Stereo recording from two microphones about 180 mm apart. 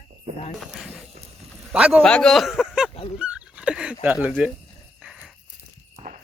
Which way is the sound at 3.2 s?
5° right (ahead or behind).